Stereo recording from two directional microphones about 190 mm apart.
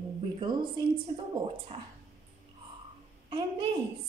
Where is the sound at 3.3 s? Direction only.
25° right (ahead or behind).